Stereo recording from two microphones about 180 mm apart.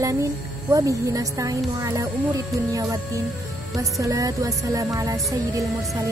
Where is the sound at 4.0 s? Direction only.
20° right (ahead or behind).